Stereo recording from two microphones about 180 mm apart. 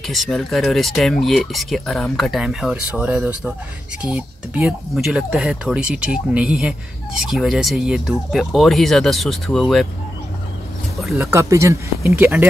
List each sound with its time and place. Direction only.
0.0 s speech: centre (ahead or behind)
11.1 s speech: 15° right (ahead or behind)